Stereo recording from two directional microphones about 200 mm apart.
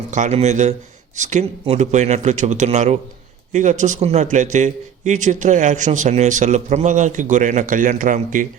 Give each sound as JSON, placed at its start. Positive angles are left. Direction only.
{"t": 0.1, "sound": "a man's voice", "side_deg": -35}